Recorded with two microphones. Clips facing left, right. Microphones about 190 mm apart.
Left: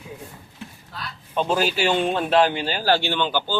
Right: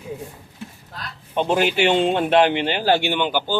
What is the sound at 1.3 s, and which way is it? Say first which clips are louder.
Speech: right 3 dB; 20° right (ahead or behind).